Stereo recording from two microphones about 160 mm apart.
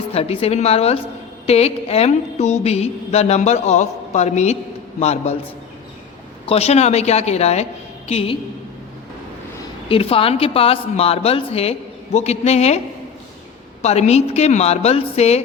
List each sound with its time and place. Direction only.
0.1 s a woman's voice: 40° left (ahead or behind)
6.4 s a woman's voice: 40° left (ahead or behind)
9.9 s a woman's voice: 35° left (ahead or behind)
13.8 s a woman's voice: 45° left (ahead or behind)